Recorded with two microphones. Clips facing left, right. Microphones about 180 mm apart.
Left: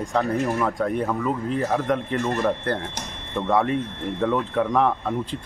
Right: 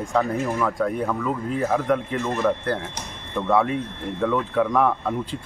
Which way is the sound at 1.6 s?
Centre (ahead or behind).